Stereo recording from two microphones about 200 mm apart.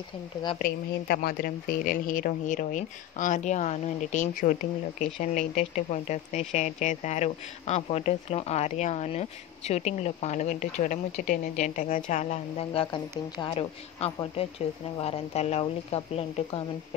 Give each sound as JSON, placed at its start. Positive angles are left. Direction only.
{"t": 0.6, "sound": "speech", "side_deg": 50}